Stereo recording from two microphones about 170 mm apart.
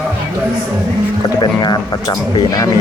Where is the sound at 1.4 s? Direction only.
25° left (ahead or behind).